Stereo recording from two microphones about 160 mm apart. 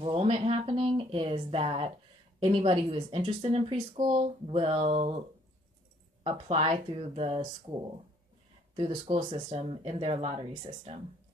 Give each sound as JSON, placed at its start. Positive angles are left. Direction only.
{"t": 0.0, "sound": "a woman's voice", "side_deg": -35}
{"t": 6.2, "sound": "a woman's voice", "side_deg": -35}